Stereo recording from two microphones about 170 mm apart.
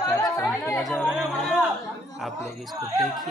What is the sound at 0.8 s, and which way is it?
Chatter, centre (ahead or behind).